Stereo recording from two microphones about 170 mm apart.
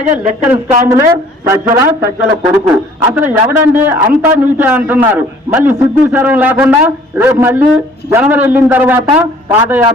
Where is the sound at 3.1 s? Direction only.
10° right (ahead or behind).